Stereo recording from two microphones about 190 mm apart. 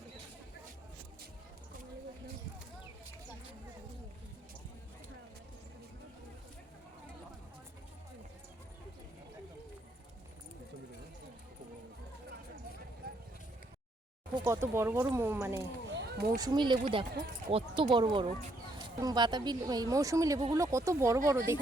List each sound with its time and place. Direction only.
13.0 s vehicle: 55° right (ahead or behind)
14.4 s speech: 15° right (ahead or behind)
15.9 s a sound: 60° right (ahead or behind)
16.3 s speech: 20° right (ahead or behind)